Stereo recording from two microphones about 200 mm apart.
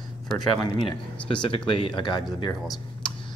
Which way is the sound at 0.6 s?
20° left (ahead or behind).